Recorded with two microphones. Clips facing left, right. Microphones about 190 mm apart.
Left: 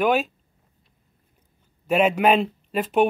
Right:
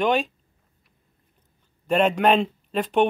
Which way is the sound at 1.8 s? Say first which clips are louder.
Left 1 dB; 5° left (ahead or behind).